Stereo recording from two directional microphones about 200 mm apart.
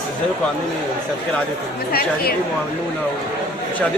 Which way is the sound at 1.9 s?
50° left (ahead or behind).